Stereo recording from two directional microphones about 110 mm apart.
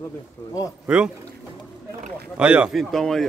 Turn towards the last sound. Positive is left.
turn(degrees=5)  # may be behind; listen again after turning